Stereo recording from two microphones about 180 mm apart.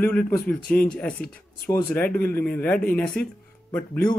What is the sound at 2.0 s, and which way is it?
Speech, 55° left (ahead or behind).